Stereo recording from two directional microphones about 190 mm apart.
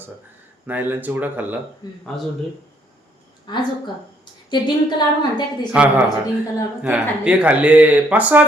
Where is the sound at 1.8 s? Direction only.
20° left (ahead or behind).